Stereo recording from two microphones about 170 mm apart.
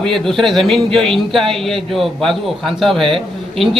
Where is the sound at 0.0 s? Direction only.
Centre (ahead or behind).